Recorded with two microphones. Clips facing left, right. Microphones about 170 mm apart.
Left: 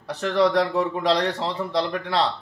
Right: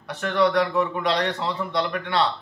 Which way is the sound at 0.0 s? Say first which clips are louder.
Left 1 dB; 30° left (ahead or behind).